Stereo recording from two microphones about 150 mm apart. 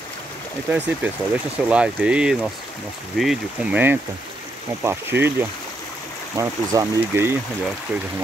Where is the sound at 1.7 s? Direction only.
5° right (ahead or behind).